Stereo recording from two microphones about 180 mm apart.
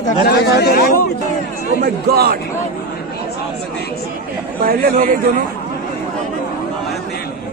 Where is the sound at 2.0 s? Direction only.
60° right (ahead or behind).